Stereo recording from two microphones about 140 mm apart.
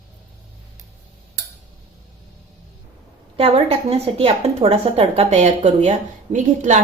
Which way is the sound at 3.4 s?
45° right (ahead or behind).